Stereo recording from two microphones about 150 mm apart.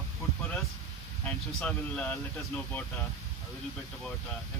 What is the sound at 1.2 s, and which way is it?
Speech, 5° left (ahead or behind).